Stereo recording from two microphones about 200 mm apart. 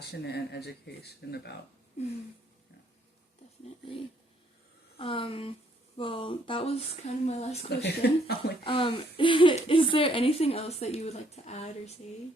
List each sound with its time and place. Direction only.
0.0 s speech: 55° left (ahead or behind)
2.0 s speech: 35° left (ahead or behind)
4.9 s speech: 25° left (ahead or behind)
7.7 s speech: 55° left (ahead or behind)
8.6 s speech: 25° left (ahead or behind)